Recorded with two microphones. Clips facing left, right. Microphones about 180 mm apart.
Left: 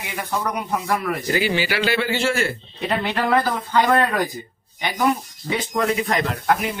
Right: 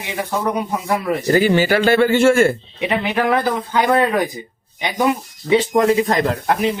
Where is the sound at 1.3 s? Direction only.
45° right (ahead or behind).